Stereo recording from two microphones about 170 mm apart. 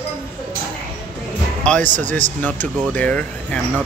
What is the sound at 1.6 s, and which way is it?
Speech, 5° left (ahead or behind).